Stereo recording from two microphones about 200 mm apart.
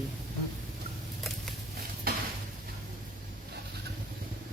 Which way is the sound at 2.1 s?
50° right (ahead or behind).